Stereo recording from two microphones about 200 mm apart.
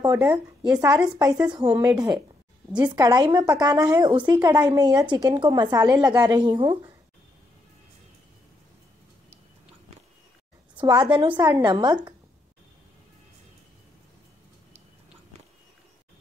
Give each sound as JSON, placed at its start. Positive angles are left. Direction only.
{"t": 0.1, "sound": "a woman's voice", "side_deg": -10}
{"t": 10.8, "sound": "a woman's voice", "side_deg": -20}